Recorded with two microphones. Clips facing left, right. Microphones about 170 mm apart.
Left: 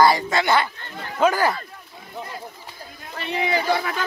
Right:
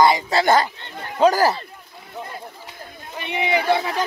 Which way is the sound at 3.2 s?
20° right (ahead or behind).